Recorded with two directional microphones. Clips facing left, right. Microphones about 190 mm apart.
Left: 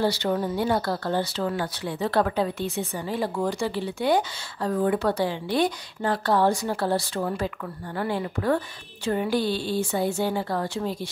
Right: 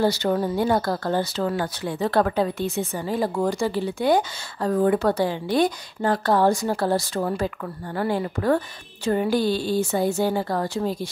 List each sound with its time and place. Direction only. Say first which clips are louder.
0.0 s speech: right 3 dB; 45° right (ahead or behind)